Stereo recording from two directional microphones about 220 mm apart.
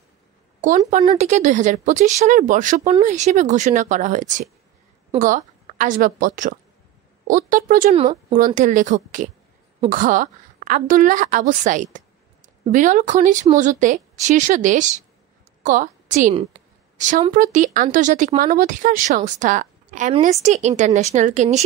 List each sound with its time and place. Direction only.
0.6 s a woman's voice: 35° right (ahead or behind)
8.0 s speech: 20° right (ahead or behind)
8.5 s a woman's voice: 35° right (ahead or behind)